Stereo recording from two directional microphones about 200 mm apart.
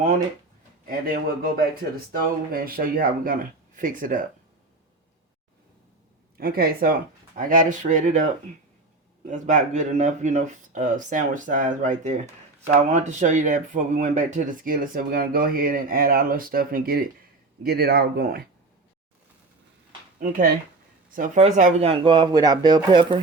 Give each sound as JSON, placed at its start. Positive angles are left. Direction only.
{"t": 0.9, "sound": "speech", "side_deg": -45}
{"t": 6.3, "sound": "speech", "side_deg": -50}
{"t": 21.2, "sound": "speech", "side_deg": -35}